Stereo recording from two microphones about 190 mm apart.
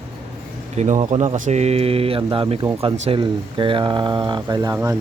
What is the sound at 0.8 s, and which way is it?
Speech, 40° right (ahead or behind).